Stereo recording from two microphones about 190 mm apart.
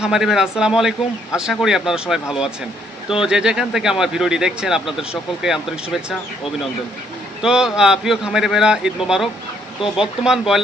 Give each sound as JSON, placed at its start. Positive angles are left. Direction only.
{"t": 0.0, "sound": "a man's voice", "side_deg": 0}
{"t": 7.4, "sound": "a man's voice", "side_deg": -5}